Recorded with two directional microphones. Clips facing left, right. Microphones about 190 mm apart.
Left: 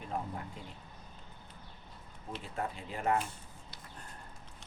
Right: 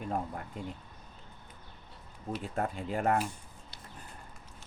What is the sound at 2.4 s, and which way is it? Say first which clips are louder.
Speech: right 4 dB; 50° right (ahead or behind).